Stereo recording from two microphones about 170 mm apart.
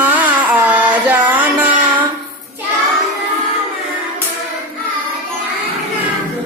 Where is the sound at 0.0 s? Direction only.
10° right (ahead or behind).